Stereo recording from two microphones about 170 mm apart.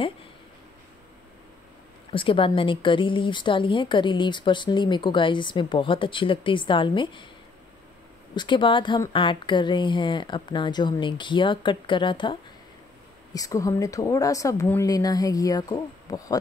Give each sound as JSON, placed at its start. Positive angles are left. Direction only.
{"t": 2.1, "sound": "speech", "side_deg": 30}
{"t": 8.4, "sound": "speech", "side_deg": 30}